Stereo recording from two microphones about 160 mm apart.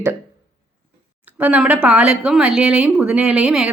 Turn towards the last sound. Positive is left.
turn(degrees=-5)  # may be behind; listen again after turning